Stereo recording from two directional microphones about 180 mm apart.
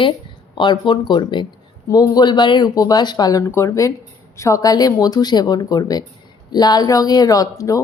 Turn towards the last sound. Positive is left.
turn(degrees=20)  # may be behind; listen again after turning